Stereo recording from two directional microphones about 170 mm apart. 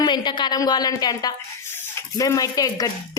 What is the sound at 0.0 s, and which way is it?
Speech, 25° left (ahead or behind).